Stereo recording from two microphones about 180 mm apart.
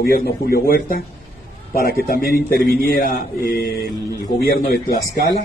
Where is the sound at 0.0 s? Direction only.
60° left (ahead or behind).